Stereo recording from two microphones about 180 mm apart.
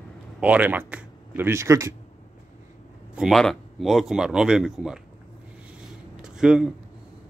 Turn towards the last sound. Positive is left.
turn(degrees=-5)  # may be behind; listen again after turning